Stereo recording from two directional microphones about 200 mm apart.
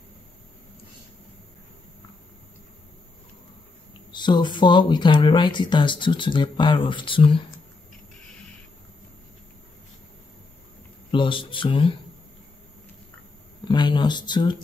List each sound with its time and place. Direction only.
4.1 s speech: 25° left (ahead or behind)
11.1 s speech: 25° left (ahead or behind)
13.7 s speech: 20° left (ahead or behind)